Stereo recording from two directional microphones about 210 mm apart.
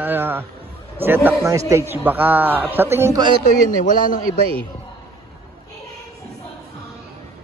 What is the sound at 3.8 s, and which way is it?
Speech, 40° left (ahead or behind).